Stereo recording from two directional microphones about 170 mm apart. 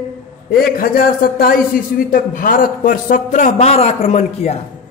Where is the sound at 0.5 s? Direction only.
60° left (ahead or behind); by 4.6 s 40° left (ahead or behind).